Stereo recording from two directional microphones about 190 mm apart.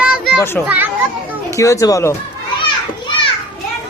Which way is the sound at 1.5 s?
15° left (ahead or behind).